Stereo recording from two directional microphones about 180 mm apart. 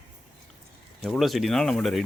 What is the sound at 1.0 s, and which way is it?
Speech, centre (ahead or behind).